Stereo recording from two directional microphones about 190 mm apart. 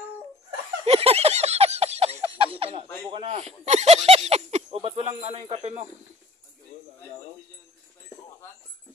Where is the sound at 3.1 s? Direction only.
30° right (ahead or behind).